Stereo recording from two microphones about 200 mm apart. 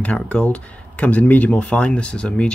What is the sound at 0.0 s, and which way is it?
Speech, 5° left (ahead or behind).